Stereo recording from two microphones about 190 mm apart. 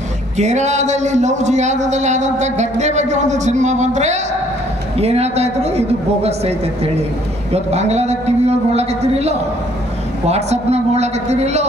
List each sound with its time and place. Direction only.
0.4 s a man's voice: 35° right (ahead or behind)